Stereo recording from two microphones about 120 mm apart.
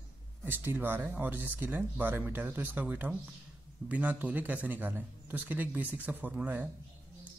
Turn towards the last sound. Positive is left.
turn(degrees=-10)  # may be behind; listen again after turning